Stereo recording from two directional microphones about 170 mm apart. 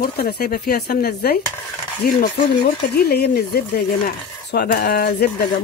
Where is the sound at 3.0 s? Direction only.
65° left (ahead or behind).